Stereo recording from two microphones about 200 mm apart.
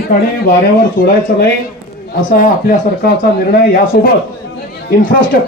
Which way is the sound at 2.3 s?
45° left (ahead or behind).